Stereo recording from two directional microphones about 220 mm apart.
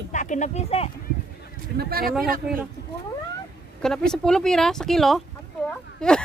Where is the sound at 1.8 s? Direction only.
45° right (ahead or behind).